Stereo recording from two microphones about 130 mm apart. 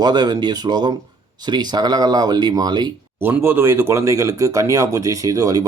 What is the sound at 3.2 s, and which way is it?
Speech, 15° right (ahead or behind).